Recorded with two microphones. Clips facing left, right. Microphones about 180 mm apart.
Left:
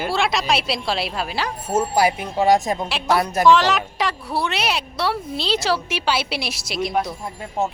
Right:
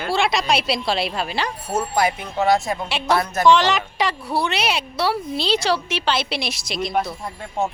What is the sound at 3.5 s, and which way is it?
A woman's voice, centre (ahead or behind).